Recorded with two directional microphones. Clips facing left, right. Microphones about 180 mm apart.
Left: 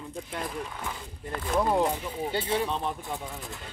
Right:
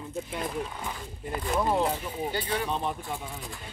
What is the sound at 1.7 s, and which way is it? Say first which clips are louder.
Speech: left 1 dB; 15° left (ahead or behind).